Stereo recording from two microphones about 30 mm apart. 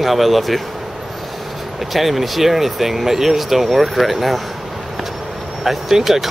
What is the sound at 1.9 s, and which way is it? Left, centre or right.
Speech, centre.